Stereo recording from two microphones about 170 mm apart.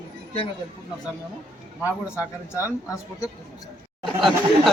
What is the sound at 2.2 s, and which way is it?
Speech, 20° left (ahead or behind).